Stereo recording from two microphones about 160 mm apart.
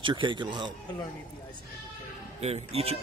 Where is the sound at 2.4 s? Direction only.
40° right (ahead or behind).